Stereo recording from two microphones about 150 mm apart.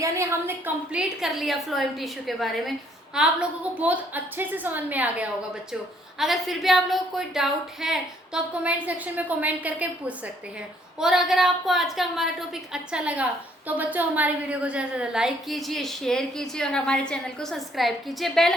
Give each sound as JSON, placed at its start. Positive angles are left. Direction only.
{"t": 0.0, "sound": "a woman's voice", "side_deg": -20}
{"t": 1.2, "sound": "a woman's voice", "side_deg": 0}